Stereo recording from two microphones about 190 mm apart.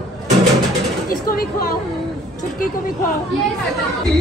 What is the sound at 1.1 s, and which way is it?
Speech, 50° left (ahead or behind).